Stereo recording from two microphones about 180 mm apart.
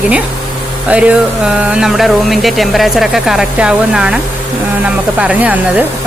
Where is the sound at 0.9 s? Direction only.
5° right (ahead or behind).